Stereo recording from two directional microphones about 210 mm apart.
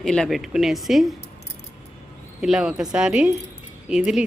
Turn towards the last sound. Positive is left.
turn(degrees=-5)  # may be behind; listen again after turning